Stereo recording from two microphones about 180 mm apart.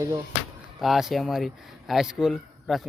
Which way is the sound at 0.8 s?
Centre (ahead or behind).